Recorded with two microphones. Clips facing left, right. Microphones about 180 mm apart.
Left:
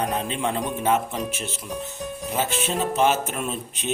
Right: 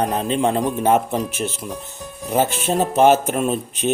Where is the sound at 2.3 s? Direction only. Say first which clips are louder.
Right 7 dB; 45° right (ahead or behind).